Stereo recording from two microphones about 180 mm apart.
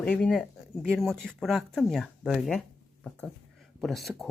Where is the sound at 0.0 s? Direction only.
5° left (ahead or behind).